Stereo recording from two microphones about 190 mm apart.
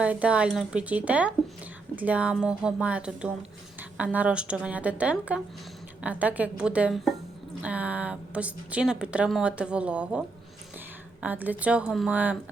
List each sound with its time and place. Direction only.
0.0 s a woman's voice: 5° right (ahead or behind)